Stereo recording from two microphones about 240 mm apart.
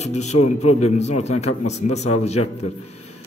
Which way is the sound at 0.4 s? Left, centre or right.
Left.